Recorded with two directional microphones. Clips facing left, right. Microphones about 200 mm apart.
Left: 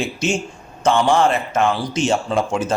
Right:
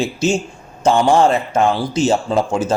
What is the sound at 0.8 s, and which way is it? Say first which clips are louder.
Speech: right 3 dB; 35° right (ahead or behind).